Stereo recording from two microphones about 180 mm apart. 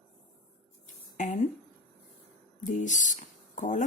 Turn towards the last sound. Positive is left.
turn(degrees=45)  # may be behind; listen again after turning